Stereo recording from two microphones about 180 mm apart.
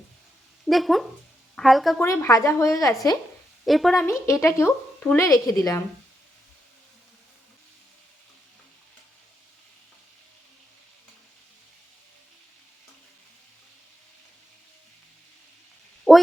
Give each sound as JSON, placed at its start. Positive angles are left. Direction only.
{"t": 0.7, "sound": "a woman's voice", "side_deg": 0}
{"t": 2.0, "sound": "speech", "side_deg": 15}
{"t": 3.7, "sound": "a woman's voice", "side_deg": 0}
{"t": 4.0, "sound": "speech", "side_deg": 15}
{"t": 16.1, "sound": "a sound", "side_deg": 0}